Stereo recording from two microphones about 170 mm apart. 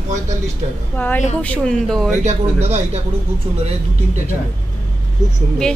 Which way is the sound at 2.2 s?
40° right (ahead or behind).